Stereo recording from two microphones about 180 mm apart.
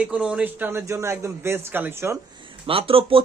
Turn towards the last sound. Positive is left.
turn(degrees=-30)  # may be behind; listen again after turning